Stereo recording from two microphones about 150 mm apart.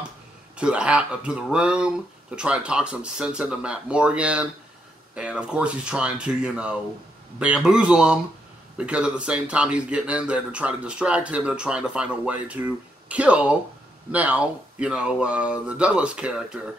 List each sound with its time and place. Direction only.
0.6 s speech: 5° right (ahead or behind)